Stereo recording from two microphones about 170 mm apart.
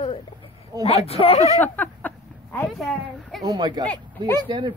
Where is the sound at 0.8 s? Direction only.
35° left (ahead or behind).